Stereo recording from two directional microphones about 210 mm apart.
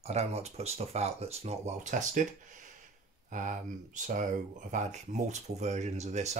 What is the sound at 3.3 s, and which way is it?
Speech, 40° right (ahead or behind).